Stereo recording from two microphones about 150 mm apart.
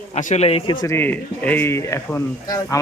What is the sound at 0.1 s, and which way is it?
Speech, 50° left (ahead or behind).